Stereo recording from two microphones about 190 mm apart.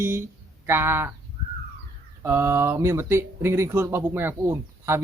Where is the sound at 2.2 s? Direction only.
15° right (ahead or behind).